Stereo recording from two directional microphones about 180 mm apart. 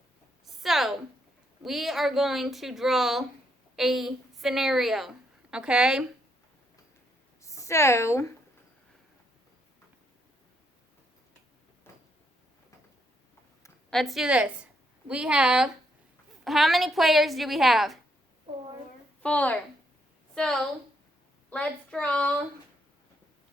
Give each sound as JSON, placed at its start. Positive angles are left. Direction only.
{"t": 0.4, "sound": "a sound", "side_deg": 0}
{"t": 1.6, "sound": "a woman's voice", "side_deg": 0}
{"t": 7.4, "sound": "a woman's voice", "side_deg": 15}
{"t": 13.9, "sound": "a woman's voice", "side_deg": 0}
{"t": 19.2, "sound": "a woman's voice", "side_deg": 10}